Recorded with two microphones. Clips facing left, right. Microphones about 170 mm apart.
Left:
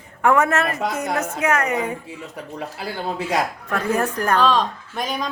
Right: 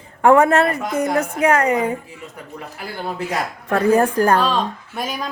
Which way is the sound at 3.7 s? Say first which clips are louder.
Right 10 dB; 30° right (ahead or behind).